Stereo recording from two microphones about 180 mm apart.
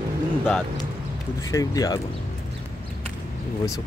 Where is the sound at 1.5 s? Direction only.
20° left (ahead or behind).